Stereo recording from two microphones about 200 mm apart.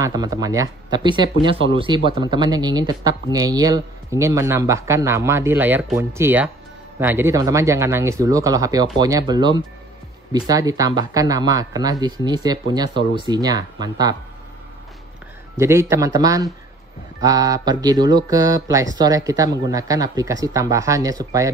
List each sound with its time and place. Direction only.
0.0 s speech: 20° right (ahead or behind)
15.5 s speech: 15° right (ahead or behind)